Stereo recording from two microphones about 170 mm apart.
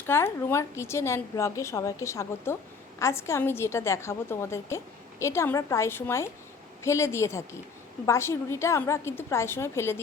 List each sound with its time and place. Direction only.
0.1 s a woman's voice: 15° left (ahead or behind)